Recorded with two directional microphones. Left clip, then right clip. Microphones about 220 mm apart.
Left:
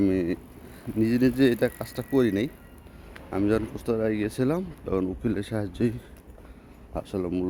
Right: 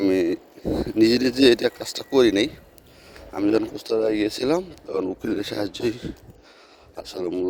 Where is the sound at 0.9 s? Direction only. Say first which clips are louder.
Right 4 dB; 35° right (ahead or behind).